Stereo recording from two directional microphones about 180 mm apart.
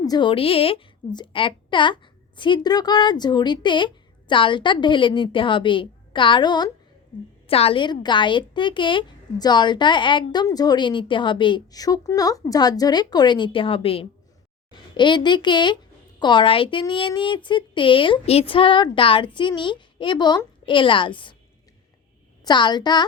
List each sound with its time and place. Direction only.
0.0 s a woman's voice: 25° left (ahead or behind)
22.4 s a woman's voice: 25° left (ahead or behind)